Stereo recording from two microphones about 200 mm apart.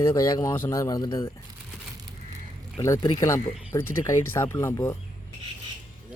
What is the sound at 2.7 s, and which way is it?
Speech, 20° left (ahead or behind).